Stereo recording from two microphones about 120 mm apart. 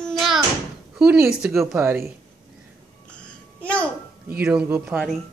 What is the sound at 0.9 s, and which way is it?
A woman's voice, 15° right (ahead or behind).